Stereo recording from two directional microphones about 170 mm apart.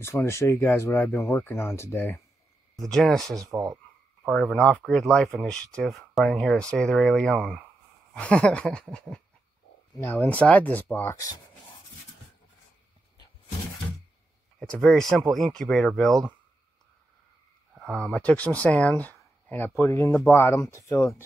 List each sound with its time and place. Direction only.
0.0 s speech: 15° left (ahead or behind)
2.7 s speech: centre (ahead or behind)
3.3 s speech: 20° right (ahead or behind)
4.3 s speech: 5° left (ahead or behind)
14.6 s speech: 5° left (ahead or behind)
17.7 s speech: centre (ahead or behind); by 21.2 s 20° left (ahead or behind)